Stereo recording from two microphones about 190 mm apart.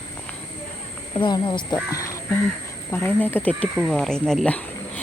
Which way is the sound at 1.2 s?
25° left (ahead or behind).